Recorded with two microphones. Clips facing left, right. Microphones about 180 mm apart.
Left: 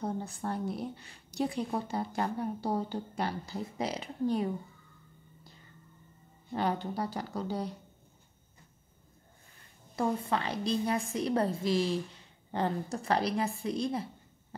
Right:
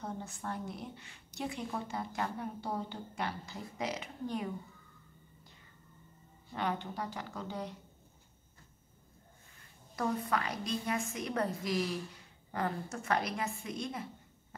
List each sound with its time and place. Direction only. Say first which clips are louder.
0.0 s a woman's voice: left 6 dB; 35° left (ahead or behind)
6.5 s a woman's voice: left 5 dB; 35° left (ahead or behind)
9.9 s a woman's voice: left 3 dB; 30° left (ahead or behind)